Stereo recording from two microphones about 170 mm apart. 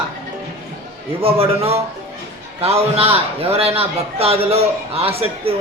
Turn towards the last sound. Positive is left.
turn(degrees=-35)  # may be behind; listen again after turning